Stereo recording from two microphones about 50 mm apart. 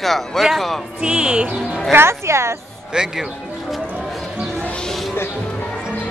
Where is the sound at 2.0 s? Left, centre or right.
Right.